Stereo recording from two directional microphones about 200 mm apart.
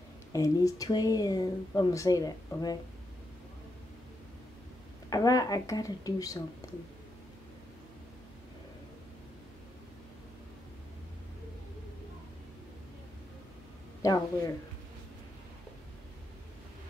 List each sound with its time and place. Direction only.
0.3 s speech: 15° left (ahead or behind)
5.1 s speech: 20° left (ahead or behind)
14.0 s speech: 15° left (ahead or behind)